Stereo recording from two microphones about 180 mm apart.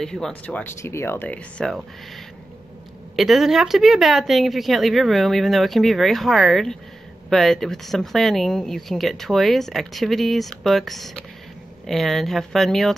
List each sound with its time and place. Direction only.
0.0 s speech: 5° left (ahead or behind)
3.2 s speech: centre (ahead or behind)